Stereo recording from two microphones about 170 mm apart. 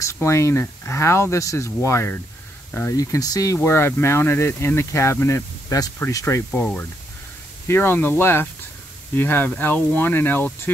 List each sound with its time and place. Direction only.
0.0 s speech: 15° left (ahead or behind)